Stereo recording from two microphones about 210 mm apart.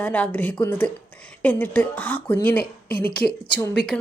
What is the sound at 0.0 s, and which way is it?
A woman's voice, 5° left (ahead or behind).